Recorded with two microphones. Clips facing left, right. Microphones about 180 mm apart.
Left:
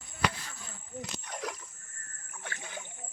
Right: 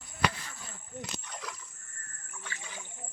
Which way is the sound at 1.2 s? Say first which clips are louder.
Left 5 dB; 50° left (ahead or behind).